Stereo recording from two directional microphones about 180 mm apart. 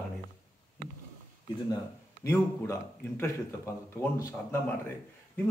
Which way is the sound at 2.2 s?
15° left (ahead or behind).